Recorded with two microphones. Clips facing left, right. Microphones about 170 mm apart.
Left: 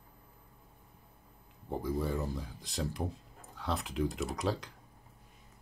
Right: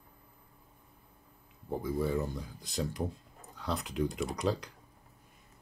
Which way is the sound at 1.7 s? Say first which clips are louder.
Right 2 dB; centre (ahead or behind).